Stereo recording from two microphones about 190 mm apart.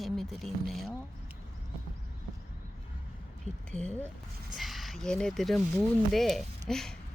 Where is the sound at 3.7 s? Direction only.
5° left (ahead or behind).